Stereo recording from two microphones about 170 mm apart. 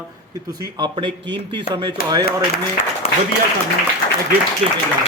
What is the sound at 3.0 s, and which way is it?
Applause, 40° left (ahead or behind).